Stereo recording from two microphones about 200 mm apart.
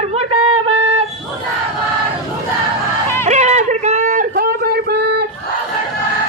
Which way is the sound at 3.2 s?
35° right (ahead or behind).